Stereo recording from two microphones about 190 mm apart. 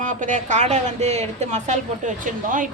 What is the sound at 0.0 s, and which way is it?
Speech, 40° right (ahead or behind).